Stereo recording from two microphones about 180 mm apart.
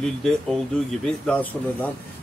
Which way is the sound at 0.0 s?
Centre (ahead or behind).